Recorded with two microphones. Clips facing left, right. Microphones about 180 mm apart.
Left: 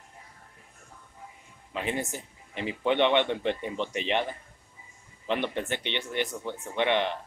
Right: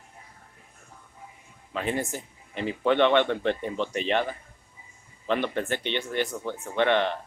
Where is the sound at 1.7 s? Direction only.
20° left (ahead or behind).